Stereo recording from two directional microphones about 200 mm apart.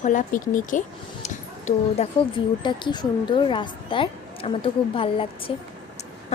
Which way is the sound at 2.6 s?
20° left (ahead or behind).